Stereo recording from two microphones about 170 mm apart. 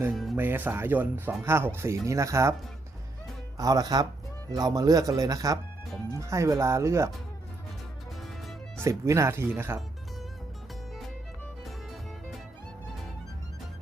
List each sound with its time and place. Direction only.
0.1 s speech: centre (ahead or behind)
0.3 s speech: 10° right (ahead or behind)
3.6 s speech: 20° right (ahead or behind)
8.8 s speech: 15° right (ahead or behind)
11.6 s music: centre (ahead or behind)